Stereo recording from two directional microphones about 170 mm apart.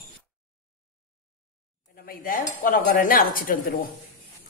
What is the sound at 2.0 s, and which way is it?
Cutlery, 55° left (ahead or behind).